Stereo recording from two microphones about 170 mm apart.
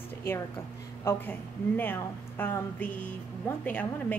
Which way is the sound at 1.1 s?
15° left (ahead or behind).